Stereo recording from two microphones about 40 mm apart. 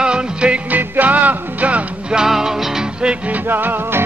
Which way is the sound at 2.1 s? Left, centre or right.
Centre.